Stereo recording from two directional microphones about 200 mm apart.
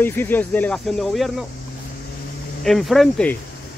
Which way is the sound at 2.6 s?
Centre (ahead or behind).